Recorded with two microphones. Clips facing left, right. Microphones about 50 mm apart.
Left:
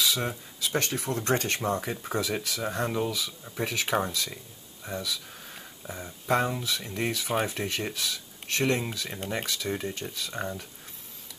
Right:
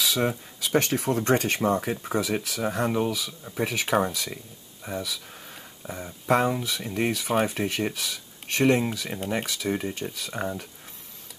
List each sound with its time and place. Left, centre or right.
0.7 s speech: right; by 4.1 s centre
4.8 s a sound: centre
6.2 s speech: centre
7.2 s speech: centre
7.6 s speech: centre